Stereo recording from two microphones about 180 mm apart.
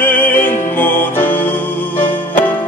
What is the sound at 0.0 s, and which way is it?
Music, 10° left (ahead or behind).